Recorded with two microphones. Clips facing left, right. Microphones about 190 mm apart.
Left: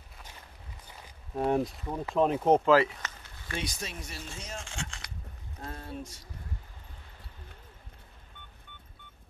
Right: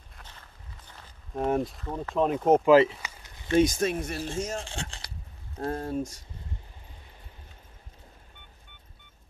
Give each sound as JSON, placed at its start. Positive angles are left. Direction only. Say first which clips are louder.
{"t": 0.8, "sound": "walk", "louder": "left 1 dB", "side_deg": 5}
{"t": 2.1, "sound": "speech", "louder": "right 2 dB", "side_deg": 0}
{"t": 2.7, "sound": "a sound", "louder": "right 5 dB", "side_deg": -15}
{"t": 3.5, "sound": "speech", "louder": "right 15 dB", "side_deg": -45}
{"t": 4.6, "sound": "speech", "louder": "right 3 dB", "side_deg": -35}
{"t": 5.7, "sound": "speech", "louder": "right 10 dB", "side_deg": -45}